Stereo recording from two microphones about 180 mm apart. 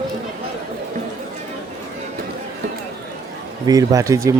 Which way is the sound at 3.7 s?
20° right (ahead or behind).